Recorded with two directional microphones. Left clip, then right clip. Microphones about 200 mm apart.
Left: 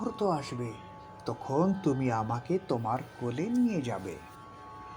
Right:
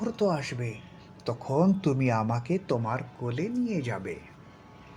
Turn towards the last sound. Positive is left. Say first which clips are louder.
# left 1 dB
turn(degrees=30)  # may be behind; listen again after turning